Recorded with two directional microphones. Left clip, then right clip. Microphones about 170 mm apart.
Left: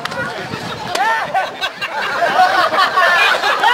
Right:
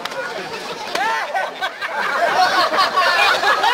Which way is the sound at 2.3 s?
50° right (ahead or behind).